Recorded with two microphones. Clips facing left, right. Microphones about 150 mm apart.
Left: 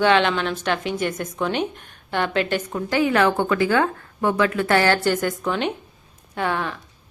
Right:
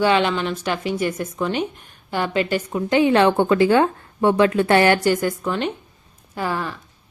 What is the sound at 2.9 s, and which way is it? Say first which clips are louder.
A woman's voice: right 3 dB; 25° right (ahead or behind).